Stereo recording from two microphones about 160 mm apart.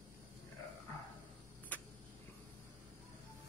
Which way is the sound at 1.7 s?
10° left (ahead or behind).